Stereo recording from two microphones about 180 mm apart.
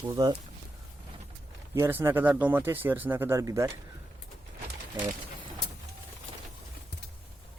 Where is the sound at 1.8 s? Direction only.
10° right (ahead or behind).